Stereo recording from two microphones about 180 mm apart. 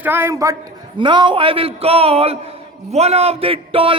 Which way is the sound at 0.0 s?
10° right (ahead or behind).